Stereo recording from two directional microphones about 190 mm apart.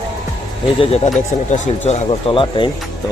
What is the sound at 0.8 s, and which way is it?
Speech, 35° left (ahead or behind).